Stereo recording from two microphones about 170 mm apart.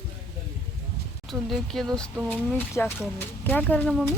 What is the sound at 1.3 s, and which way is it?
A woman's voice, centre (ahead or behind).